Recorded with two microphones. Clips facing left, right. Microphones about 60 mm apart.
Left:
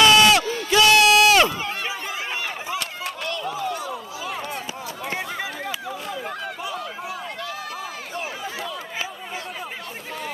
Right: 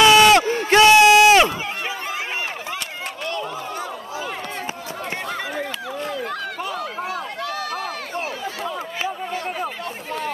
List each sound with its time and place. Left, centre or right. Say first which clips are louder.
0.0 s crowd: right 3 dB; right
0.4 s a sound: right 4 dB; right
6.1 s run: right 3 dB; right